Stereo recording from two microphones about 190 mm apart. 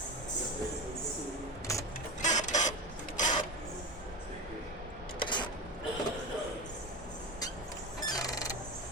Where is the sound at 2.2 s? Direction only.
40° left (ahead or behind).